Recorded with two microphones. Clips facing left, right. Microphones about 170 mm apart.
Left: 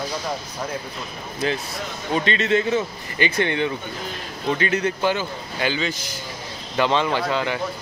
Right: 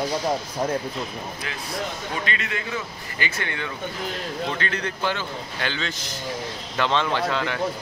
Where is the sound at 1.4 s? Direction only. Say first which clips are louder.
Left 7 dB; 30° left (ahead or behind); by 7.6 s 5° left (ahead or behind).